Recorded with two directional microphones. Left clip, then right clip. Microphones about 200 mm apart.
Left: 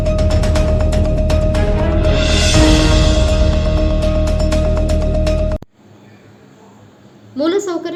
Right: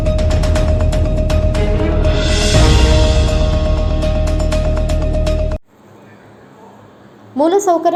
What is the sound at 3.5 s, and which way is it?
Music, centre (ahead or behind).